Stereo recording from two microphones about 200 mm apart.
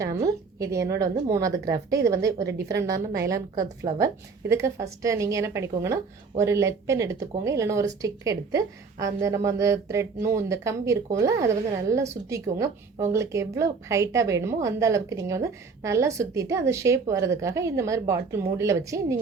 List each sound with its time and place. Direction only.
0.0 s a woman's voice: 15° right (ahead or behind)